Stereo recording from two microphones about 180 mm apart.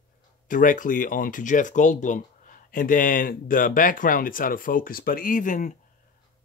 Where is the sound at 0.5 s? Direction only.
45° left (ahead or behind).